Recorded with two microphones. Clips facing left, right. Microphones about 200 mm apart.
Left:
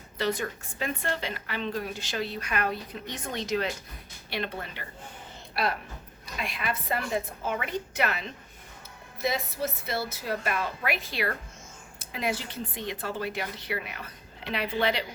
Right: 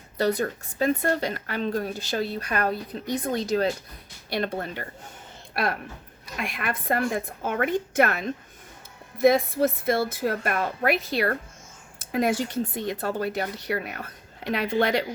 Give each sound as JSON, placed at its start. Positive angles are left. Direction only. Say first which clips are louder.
{"t": 0.2, "sound": "speech", "louder": "right 5 dB", "side_deg": -35}
{"t": 6.2, "sound": "speech", "louder": "right 2 dB", "side_deg": -50}